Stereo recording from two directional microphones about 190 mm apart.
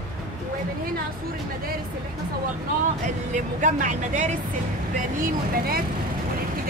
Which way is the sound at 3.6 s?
40° right (ahead or behind).